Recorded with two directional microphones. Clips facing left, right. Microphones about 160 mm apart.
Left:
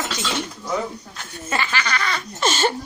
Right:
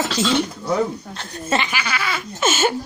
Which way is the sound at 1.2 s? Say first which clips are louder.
Right 4 dB; 25° right (ahead or behind).